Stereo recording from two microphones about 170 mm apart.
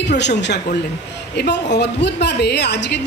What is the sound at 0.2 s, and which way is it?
A woman's voice, 85° left.